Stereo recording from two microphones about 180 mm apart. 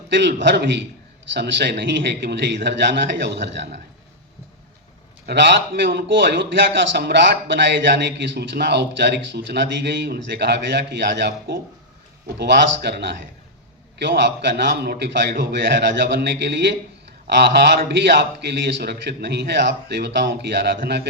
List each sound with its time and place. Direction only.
0.1 s a man's voice: 75° right (ahead or behind)
5.2 s a man's voice: 70° right (ahead or behind)